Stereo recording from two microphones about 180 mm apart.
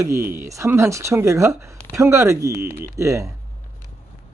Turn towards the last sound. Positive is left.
turn(degrees=-15)  # may be behind; listen again after turning